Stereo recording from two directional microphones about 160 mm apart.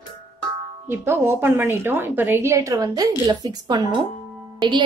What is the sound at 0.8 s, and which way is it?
A woman's voice, 15° right (ahead or behind).